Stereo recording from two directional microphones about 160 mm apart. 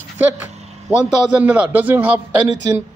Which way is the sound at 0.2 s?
10° right (ahead or behind).